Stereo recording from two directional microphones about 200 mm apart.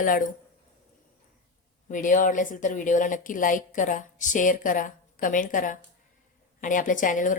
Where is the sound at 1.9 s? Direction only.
40° left (ahead or behind).